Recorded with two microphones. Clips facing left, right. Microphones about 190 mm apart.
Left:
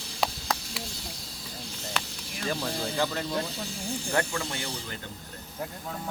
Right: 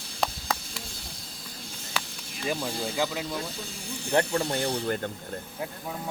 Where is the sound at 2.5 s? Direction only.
10° right (ahead or behind).